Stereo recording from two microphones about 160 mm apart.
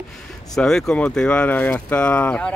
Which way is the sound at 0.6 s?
5° left (ahead or behind).